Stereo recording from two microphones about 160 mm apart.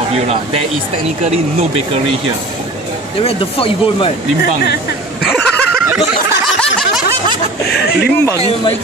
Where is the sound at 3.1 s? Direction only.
35° left (ahead or behind).